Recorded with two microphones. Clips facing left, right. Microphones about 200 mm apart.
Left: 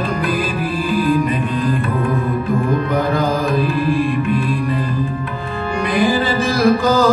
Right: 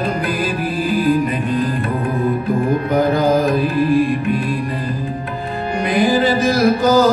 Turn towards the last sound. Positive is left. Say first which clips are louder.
# right 1 dB
turn(degrees=-40)  # may be behind; listen again after turning